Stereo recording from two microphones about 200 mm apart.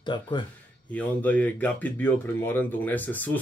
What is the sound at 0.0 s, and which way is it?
Speech, 25° left (ahead or behind).